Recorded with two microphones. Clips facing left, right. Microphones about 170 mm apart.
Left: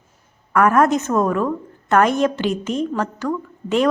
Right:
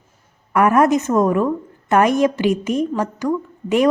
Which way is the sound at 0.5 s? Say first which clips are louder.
Right 1 dB; 15° right (ahead or behind).